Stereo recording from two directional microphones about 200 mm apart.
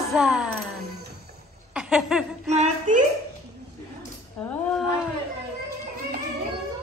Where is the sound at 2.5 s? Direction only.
35° right (ahead or behind).